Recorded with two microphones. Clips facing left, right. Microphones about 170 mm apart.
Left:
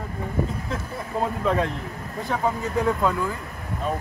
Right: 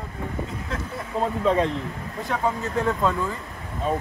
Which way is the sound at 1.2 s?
5° left (ahead or behind).